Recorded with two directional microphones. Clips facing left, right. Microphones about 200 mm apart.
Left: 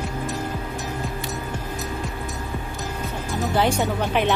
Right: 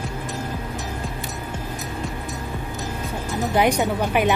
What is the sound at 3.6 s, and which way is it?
Speech, 15° right (ahead or behind).